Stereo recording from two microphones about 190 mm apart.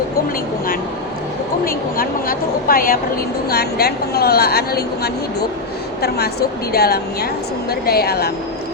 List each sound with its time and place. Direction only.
1.6 s a woman's voice: 50° left (ahead or behind)